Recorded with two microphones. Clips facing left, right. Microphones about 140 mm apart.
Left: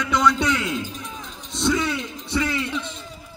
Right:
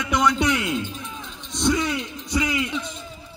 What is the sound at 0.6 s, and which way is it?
Music, centre (ahead or behind).